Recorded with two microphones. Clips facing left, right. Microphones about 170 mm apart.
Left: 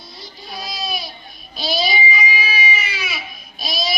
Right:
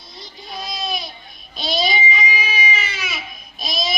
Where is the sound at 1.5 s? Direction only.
5° left (ahead or behind).